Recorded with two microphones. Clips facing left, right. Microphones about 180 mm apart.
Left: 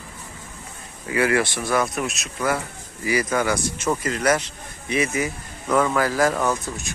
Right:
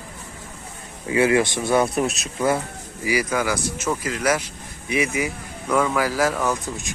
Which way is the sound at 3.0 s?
10° right (ahead or behind).